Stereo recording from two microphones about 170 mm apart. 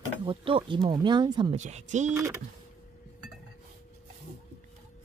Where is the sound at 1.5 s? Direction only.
45° right (ahead or behind).